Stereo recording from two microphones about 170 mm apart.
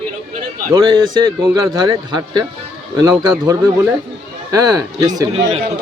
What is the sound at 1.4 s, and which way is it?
Speech, 10° right (ahead or behind).